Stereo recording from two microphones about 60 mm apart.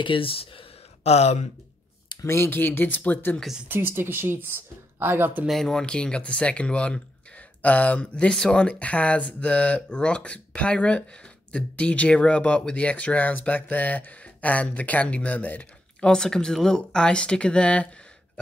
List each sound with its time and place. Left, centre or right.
2.2 s speech: left
3.6 s speech: right
5.5 s speech: centre; by 16.1 s left
16.1 s speech: centre